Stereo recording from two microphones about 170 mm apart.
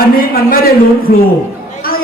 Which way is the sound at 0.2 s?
60° left (ahead or behind).